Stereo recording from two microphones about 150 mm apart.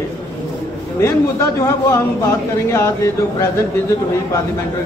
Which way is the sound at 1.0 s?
20° left (ahead or behind).